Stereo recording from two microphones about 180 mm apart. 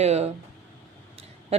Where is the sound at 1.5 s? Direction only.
35° right (ahead or behind).